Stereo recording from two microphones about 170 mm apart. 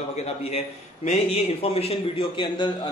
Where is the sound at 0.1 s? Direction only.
40° left (ahead or behind).